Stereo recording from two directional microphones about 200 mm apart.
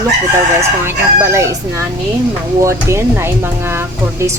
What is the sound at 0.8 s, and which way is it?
Speech, 10° right (ahead or behind).